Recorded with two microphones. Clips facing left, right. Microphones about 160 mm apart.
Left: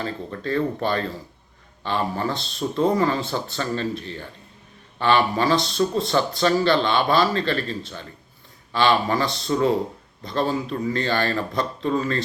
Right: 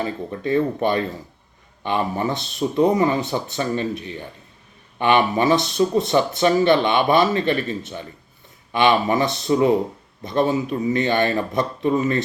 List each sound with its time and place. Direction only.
0.0 s speech: 20° right (ahead or behind)